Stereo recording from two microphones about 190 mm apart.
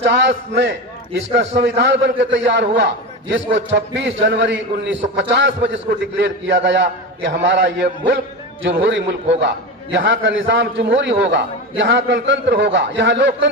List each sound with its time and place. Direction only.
0.0 s a man's voice: 70° right (ahead or behind)
1.4 s a man's voice: 70° right (ahead or behind)